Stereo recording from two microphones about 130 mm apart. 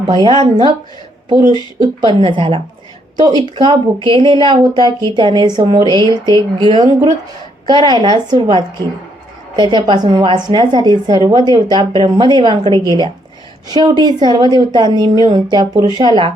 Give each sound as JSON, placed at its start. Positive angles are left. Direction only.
{"t": 0.1, "sound": "a woman's voice", "side_deg": -35}